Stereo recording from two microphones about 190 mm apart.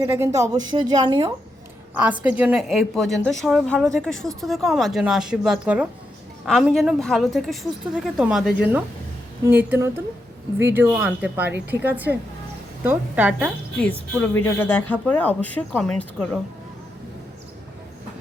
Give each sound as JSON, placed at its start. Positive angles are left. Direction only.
{"t": 0.0, "sound": "a woman's voice", "side_deg": -15}
{"t": 2.2, "sound": "a woman's voice", "side_deg": -5}
{"t": 13.7, "sound": "speech", "side_deg": 5}